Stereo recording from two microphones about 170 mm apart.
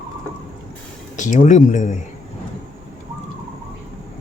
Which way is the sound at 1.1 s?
45° left (ahead or behind).